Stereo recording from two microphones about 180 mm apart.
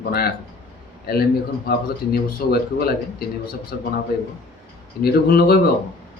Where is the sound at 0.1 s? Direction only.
60° left (ahead or behind).